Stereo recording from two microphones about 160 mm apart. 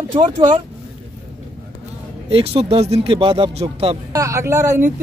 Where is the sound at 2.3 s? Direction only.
40° right (ahead or behind).